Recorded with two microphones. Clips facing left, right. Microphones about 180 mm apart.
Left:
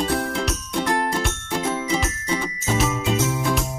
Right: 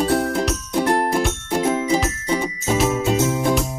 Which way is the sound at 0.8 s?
10° right (ahead or behind).